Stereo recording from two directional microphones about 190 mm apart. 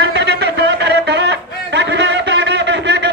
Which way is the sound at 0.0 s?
60° right (ahead or behind).